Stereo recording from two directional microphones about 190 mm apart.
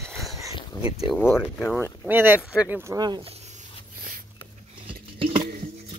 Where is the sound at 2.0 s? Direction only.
10° right (ahead or behind).